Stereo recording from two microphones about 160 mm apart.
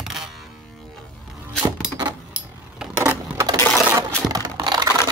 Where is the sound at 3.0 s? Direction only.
15° right (ahead or behind).